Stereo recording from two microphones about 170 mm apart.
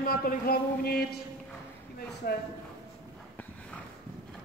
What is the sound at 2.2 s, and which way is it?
Speech, 60° left (ahead or behind).